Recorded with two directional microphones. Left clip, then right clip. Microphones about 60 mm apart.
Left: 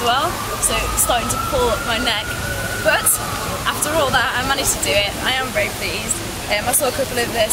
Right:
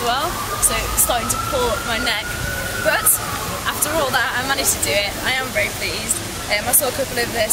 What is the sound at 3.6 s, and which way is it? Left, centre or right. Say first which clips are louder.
Speech: left 2 dB; centre.